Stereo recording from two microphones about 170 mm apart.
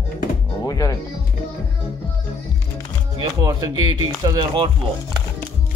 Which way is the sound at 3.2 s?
20° right (ahead or behind).